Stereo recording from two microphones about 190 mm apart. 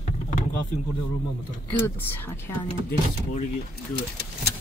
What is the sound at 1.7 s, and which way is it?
Speech, 10° left (ahead or behind).